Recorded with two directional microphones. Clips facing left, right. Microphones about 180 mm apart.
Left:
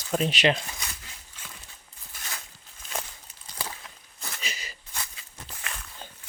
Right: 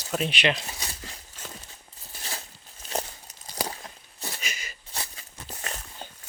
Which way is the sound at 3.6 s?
40° right (ahead or behind).